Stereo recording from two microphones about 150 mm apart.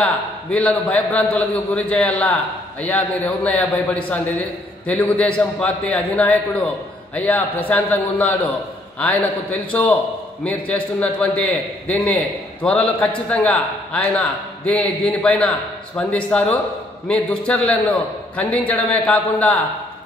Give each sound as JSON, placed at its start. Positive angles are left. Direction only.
{"t": 0.0, "sound": "a man's voice", "side_deg": 10}